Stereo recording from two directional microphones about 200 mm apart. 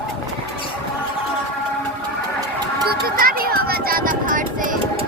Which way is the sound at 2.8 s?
50° right (ahead or behind).